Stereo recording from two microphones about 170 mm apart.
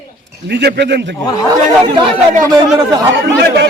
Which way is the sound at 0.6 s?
80° right.